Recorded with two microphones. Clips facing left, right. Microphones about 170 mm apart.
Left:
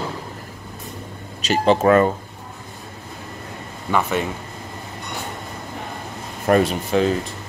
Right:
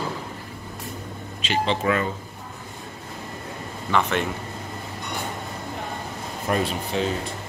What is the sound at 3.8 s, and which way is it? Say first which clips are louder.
Speech: left 2 dB; 10° left (ahead or behind).